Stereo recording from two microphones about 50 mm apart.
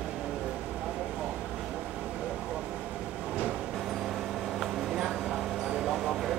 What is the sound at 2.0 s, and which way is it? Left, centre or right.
Vehicle, right.